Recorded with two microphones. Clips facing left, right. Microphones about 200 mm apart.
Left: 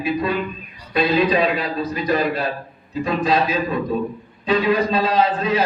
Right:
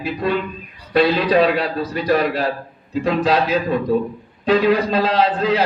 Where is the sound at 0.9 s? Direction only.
70° right (ahead or behind).